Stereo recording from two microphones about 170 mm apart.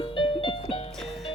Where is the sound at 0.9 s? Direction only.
Centre (ahead or behind).